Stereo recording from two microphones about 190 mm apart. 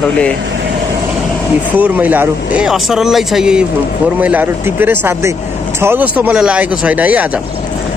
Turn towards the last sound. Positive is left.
turn(degrees=-10)  # may be behind; listen again after turning